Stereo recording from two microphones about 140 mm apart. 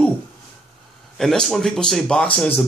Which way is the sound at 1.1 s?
Centre (ahead or behind).